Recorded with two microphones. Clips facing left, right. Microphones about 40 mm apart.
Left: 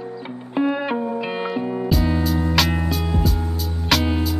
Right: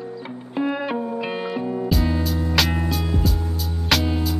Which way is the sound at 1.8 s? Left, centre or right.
Centre.